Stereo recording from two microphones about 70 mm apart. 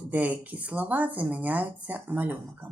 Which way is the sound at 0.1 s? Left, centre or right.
Right.